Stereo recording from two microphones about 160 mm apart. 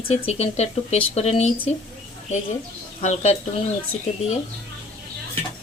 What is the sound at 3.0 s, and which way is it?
Speech, 45° left (ahead or behind).